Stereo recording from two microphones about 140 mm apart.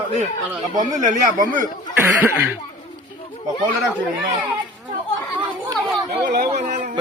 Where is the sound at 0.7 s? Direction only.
65° right (ahead or behind).